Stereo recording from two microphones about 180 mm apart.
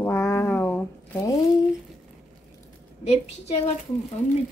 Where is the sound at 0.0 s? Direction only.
15° left (ahead or behind).